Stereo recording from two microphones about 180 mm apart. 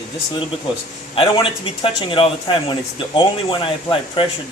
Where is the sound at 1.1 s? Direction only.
30° left (ahead or behind).